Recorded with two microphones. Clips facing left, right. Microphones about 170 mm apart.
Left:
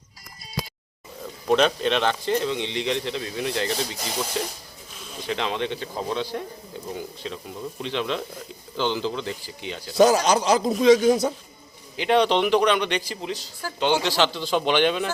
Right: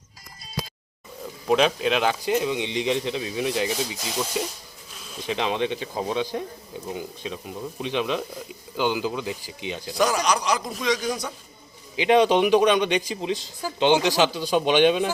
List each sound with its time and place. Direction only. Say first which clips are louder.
1.5 s speech: even; 5° right (ahead or behind)
10.0 s speech: left 5 dB; 25° left (ahead or behind)
11.9 s speech: right 2 dB; 15° right (ahead or behind)